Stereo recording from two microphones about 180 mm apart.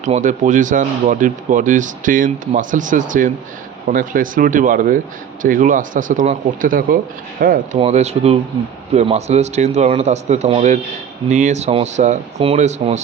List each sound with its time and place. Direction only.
0.0 s speech: 45° right (ahead or behind)
7.8 s speech: 35° right (ahead or behind)